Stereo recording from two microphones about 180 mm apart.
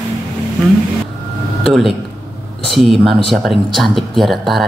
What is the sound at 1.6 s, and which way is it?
A woman's voice, centre (ahead or behind).